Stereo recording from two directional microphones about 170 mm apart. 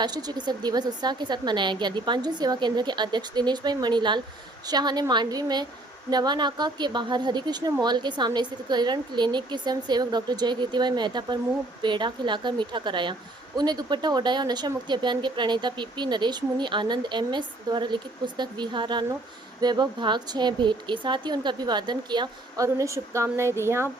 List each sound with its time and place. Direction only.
0.0 s speech: 25° right (ahead or behind)